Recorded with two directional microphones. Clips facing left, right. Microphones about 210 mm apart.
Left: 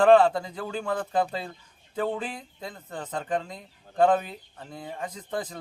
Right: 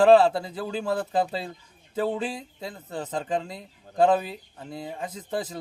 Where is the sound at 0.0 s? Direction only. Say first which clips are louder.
Right 1 dB; 10° right (ahead or behind).